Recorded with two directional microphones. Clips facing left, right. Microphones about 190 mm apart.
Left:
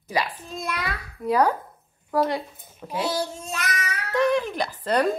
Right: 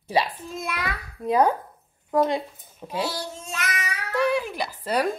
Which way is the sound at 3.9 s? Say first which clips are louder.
Left 2 dB; 10° right (ahead or behind).